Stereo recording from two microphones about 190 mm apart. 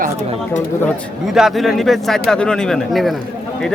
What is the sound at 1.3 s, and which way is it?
Speech, centre (ahead or behind).